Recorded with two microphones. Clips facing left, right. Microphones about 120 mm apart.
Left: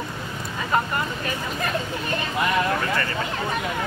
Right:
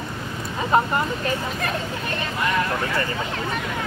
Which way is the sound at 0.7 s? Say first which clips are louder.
Right 4 dB; 25° right (ahead or behind).